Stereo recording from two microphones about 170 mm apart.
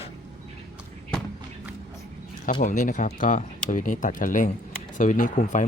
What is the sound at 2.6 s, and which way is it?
Speech, 50° left (ahead or behind).